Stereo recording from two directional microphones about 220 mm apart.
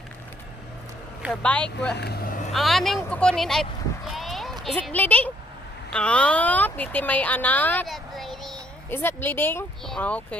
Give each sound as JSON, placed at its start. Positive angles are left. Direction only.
{"t": 1.2, "sound": "speech", "side_deg": 5}
{"t": 2.0, "sound": "speech", "side_deg": 45}
{"t": 2.5, "sound": "speech", "side_deg": 0}
{"t": 4.1, "sound": "a sound", "side_deg": 0}
{"t": 4.6, "sound": "speech", "side_deg": 5}